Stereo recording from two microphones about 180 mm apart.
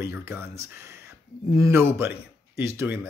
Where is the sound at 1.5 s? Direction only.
15° right (ahead or behind).